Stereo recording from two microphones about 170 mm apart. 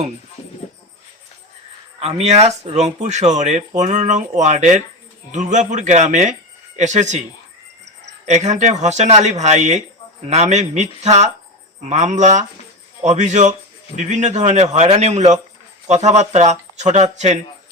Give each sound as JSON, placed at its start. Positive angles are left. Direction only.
{"t": 2.0, "sound": "speech", "side_deg": -40}
{"t": 8.3, "sound": "speech", "side_deg": -45}